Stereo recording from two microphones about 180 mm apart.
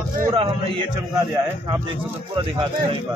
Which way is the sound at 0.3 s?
25° right (ahead or behind).